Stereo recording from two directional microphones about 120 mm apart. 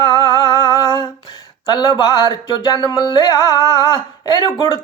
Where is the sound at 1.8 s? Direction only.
35° left (ahead or behind).